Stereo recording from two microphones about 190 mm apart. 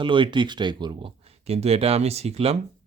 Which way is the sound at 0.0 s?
25° right (ahead or behind).